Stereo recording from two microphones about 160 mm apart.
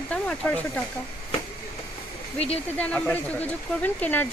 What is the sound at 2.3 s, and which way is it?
Speech, 40° left (ahead or behind).